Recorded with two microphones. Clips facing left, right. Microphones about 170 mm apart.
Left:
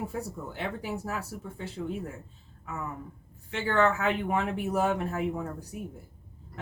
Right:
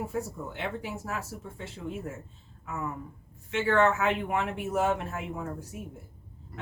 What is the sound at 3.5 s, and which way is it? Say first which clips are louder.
Speech: right 1 dB; 35° left (ahead or behind).